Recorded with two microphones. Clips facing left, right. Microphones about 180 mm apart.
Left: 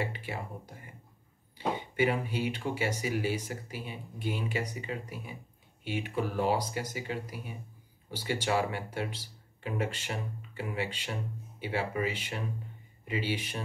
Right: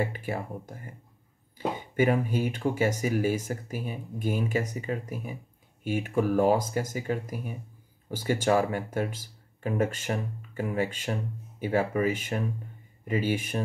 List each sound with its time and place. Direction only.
0.0 s speech: 45° right (ahead or behind)
2.0 s speech: 45° right (ahead or behind)